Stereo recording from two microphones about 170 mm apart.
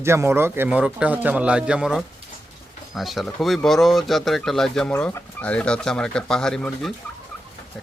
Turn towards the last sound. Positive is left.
turn(degrees=5)  # may be behind; listen again after turning